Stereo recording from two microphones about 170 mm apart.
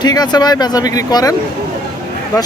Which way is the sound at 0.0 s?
25° left (ahead or behind).